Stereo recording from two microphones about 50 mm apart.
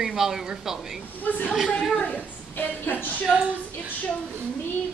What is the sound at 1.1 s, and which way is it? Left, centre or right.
A woman's voice, left.